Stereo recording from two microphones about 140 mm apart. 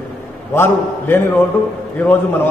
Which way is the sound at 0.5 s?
15° left (ahead or behind).